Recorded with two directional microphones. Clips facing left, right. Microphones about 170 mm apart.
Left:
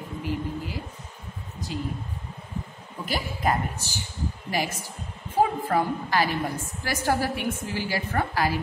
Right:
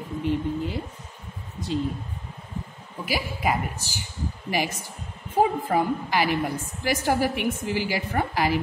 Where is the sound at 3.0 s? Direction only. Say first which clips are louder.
Even; 5° right (ahead or behind).